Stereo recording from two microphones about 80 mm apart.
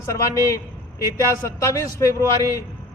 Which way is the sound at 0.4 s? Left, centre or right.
Left.